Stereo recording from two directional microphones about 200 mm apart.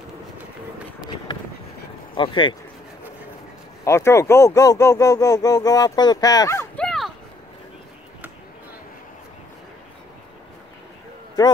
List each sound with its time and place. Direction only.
1.0 s run: 20° left (ahead or behind)
2.1 s speech: 25° left (ahead or behind)
3.8 s speech: 15° left (ahead or behind)
6.8 s dog: centre (ahead or behind)
11.4 s speech: 20° left (ahead or behind)